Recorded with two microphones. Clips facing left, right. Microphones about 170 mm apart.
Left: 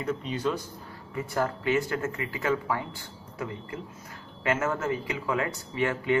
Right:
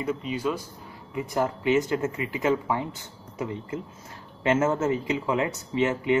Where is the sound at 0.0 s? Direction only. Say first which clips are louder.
Right 1 dB; 10° right (ahead or behind).